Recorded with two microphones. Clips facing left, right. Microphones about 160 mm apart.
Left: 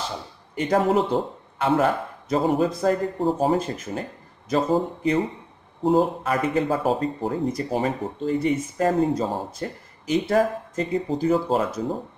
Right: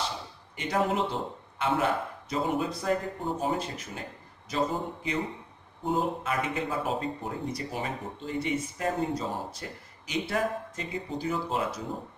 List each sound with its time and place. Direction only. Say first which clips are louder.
0.6 s a man's voice: left 7 dB; 45° left (ahead or behind)